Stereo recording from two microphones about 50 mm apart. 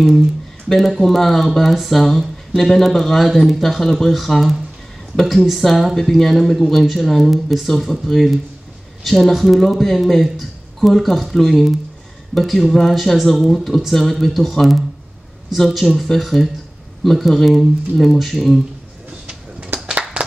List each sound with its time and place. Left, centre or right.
0.7 s speech: centre
19.7 s a sound: right
20.2 s clapping: right